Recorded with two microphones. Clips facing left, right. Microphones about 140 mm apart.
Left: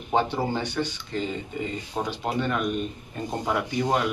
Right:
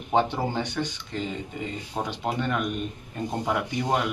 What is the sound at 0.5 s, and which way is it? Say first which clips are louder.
Speech: left 1 dB; 20° right (ahead or behind).